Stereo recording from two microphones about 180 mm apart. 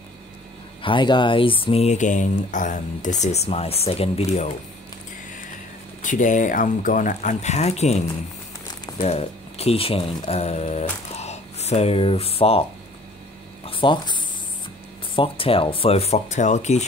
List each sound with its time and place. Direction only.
0.8 s speech: 25° left (ahead or behind)
6.0 s speech: 45° left (ahead or behind)
13.7 s a sound: 30° left (ahead or behind)
15.1 s speech: 30° left (ahead or behind)